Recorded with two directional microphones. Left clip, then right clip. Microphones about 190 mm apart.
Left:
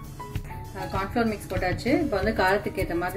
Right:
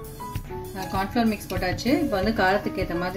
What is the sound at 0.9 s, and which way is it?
Speech, 60° right (ahead or behind).